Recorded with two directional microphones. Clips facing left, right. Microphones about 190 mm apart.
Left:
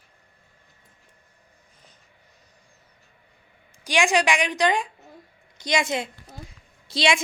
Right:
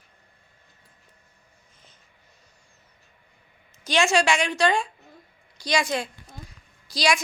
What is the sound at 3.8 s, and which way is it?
A woman's voice, 15° left (ahead or behind).